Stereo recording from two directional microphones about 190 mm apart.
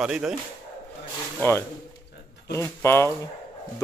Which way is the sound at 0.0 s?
5° right (ahead or behind).